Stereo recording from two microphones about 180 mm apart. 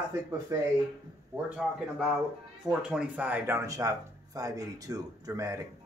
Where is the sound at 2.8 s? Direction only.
5° right (ahead or behind).